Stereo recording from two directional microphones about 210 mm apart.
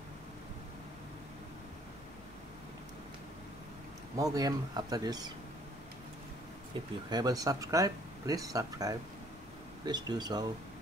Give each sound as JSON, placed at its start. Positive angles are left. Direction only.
{"t": 4.2, "sound": "speech", "side_deg": -15}
{"t": 7.1, "sound": "speech", "side_deg": -20}